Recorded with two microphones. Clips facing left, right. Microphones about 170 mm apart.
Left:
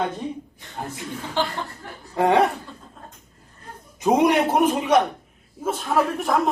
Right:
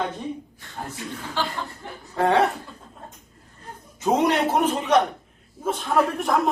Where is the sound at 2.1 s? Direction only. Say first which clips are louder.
Left 2 dB; 15° left (ahead or behind).